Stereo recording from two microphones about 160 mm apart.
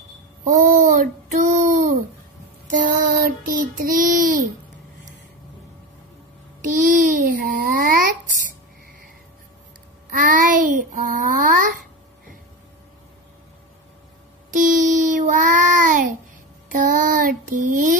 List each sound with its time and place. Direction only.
0.6 s child singing: 55° right (ahead or behind)
6.6 s babbling: 55° right (ahead or behind)
10.1 s child singing: 55° right (ahead or behind)
14.5 s child singing: 55° right (ahead or behind)